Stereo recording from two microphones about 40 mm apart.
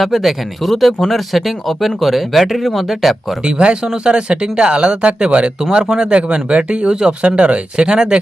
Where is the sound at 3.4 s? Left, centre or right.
Right.